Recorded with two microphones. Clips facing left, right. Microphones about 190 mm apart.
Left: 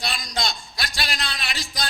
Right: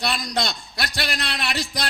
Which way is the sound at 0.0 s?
60° right (ahead or behind).